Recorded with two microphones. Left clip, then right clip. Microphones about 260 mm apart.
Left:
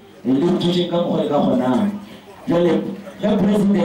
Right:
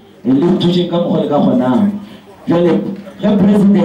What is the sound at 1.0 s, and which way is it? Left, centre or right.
Speech, left.